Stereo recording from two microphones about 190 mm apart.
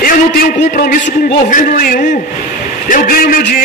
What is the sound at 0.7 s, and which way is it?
A man's voice, 45° left (ahead or behind).